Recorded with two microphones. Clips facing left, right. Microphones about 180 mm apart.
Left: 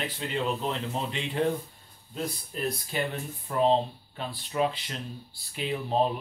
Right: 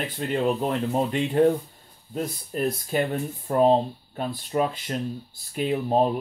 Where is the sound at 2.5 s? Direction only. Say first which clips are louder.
Right 8 dB; 45° right (ahead or behind).